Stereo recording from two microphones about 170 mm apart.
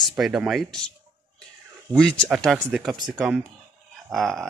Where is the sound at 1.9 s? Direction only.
5° left (ahead or behind).